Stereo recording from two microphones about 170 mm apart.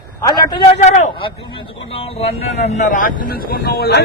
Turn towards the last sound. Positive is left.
turn(degrees=65)  # may be behind; listen again after turning